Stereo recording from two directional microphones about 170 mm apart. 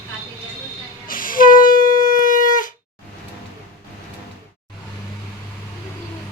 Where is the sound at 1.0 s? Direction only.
55° left (ahead or behind).